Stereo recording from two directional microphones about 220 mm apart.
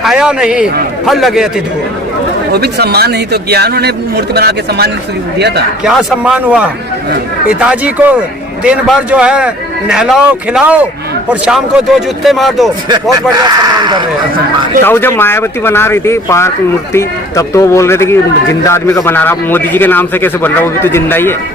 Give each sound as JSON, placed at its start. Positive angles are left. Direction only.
{"t": 0.0, "sound": "a man's voice", "side_deg": -5}
{"t": 2.5, "sound": "a man's voice", "side_deg": -45}
{"t": 5.8, "sound": "a man's voice", "side_deg": -5}
{"t": 12.9, "sound": "speech", "side_deg": -15}
{"t": 14.8, "sound": "speech", "side_deg": 10}